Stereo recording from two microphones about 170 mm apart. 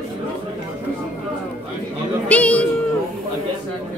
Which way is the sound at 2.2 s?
10° left (ahead or behind).